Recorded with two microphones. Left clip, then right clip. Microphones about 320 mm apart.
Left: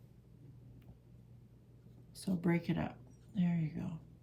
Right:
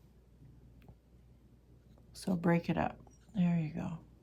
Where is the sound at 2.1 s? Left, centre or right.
Centre.